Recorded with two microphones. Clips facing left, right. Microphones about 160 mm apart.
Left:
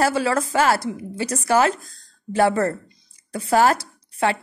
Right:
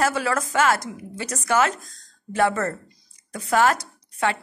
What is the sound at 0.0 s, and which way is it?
A woman's voice, 30° left (ahead or behind).